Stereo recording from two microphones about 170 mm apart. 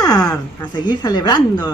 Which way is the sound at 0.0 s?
20° left (ahead or behind).